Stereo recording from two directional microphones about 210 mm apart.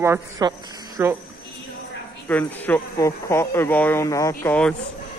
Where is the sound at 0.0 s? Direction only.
15° right (ahead or behind).